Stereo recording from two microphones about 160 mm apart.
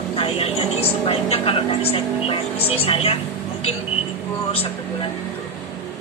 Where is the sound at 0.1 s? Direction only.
35° left (ahead or behind).